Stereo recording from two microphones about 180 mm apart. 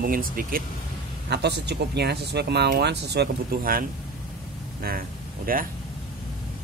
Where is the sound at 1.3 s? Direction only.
70° right (ahead or behind).